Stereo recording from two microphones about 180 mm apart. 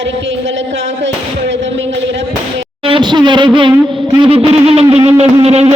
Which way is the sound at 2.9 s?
25° right (ahead or behind).